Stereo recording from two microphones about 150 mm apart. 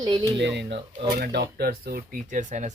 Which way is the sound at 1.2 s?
90° right.